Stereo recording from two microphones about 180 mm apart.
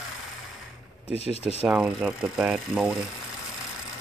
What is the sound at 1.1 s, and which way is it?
Speech, 35° left (ahead or behind).